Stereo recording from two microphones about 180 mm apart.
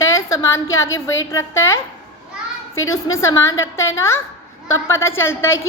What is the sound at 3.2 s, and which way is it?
A woman's voice, 15° left (ahead or behind).